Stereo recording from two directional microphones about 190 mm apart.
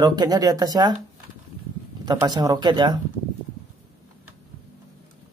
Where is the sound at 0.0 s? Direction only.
20° right (ahead or behind).